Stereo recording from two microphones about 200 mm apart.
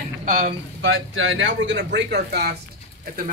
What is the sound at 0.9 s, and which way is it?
Speech, 70° right (ahead or behind).